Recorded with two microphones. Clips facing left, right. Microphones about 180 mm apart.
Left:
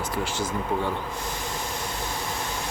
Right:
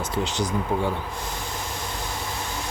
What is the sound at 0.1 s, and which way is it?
Speech, 20° right (ahead or behind).